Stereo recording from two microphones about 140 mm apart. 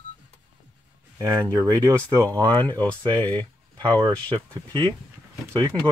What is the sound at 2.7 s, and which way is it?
Speech, 30° right (ahead or behind).